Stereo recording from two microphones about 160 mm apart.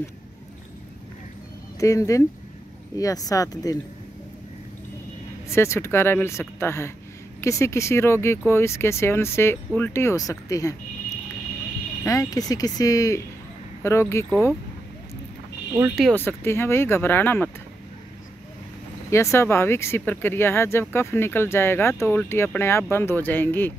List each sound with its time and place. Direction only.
1.8 s speech: 20° left (ahead or behind)
5.5 s speech: 15° left (ahead or behind)
12.0 s speech: 20° left (ahead or behind)
16.0 s speech: 10° left (ahead or behind)
19.0 s speech: 15° left (ahead or behind)